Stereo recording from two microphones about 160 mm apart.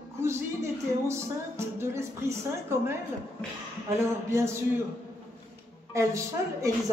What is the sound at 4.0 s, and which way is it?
Speech, 15° right (ahead or behind).